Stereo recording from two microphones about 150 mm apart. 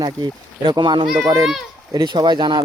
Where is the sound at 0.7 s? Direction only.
30° right (ahead or behind).